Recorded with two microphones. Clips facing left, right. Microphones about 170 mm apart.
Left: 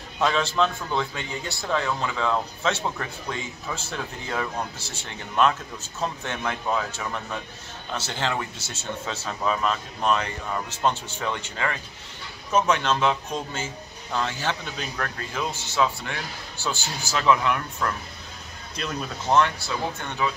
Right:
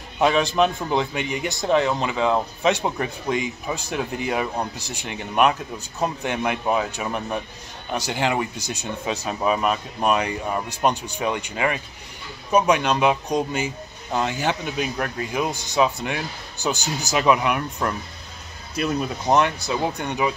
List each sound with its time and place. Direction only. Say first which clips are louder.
0.2 s a man's voice: right 4 dB; 15° right (ahead or behind)